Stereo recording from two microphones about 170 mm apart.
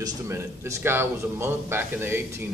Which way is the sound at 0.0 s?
15° right (ahead or behind).